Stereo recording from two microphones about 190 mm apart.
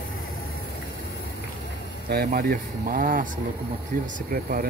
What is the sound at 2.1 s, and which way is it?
Speech, 55° right (ahead or behind).